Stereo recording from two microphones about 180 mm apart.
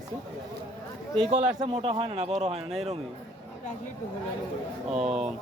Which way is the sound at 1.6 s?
30° right (ahead or behind).